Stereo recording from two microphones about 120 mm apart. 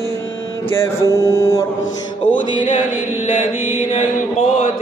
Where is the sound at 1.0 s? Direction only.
25° left (ahead or behind).